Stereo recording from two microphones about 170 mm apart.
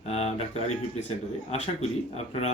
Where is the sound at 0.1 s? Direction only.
40° left (ahead or behind).